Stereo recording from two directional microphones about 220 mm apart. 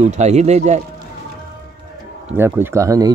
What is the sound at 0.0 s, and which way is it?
Speech, 30° right (ahead or behind).